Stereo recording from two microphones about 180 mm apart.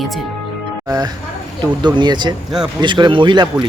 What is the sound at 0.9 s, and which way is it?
Speech, 20° right (ahead or behind).